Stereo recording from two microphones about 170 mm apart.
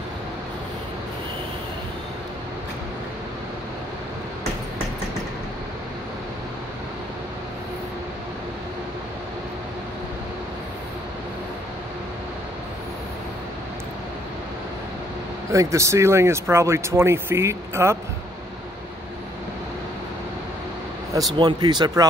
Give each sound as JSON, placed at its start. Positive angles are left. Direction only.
{"t": 15.5, "sound": "speech", "side_deg": -20}
{"t": 21.4, "sound": "speech", "side_deg": -25}